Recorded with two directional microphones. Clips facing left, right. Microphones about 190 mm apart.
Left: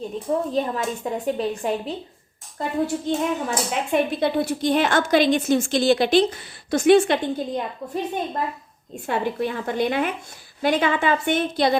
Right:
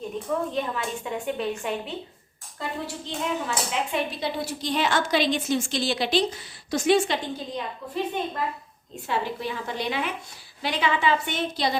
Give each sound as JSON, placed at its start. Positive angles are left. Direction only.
{"t": 0.3, "sound": "a woman's voice", "side_deg": 35}
{"t": 9.0, "sound": "speech", "side_deg": 55}